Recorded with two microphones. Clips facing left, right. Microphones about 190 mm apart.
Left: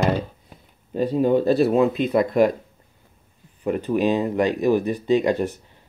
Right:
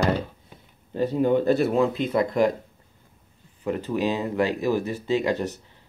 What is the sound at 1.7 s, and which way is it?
Speech, 20° left (ahead or behind).